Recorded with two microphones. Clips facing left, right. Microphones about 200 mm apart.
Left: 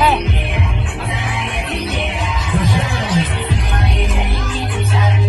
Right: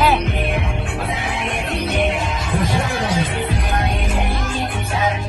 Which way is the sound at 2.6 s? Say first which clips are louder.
Left 1 dB; 50° right (ahead or behind).